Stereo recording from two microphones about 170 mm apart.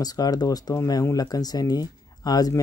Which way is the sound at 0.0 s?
25° left (ahead or behind).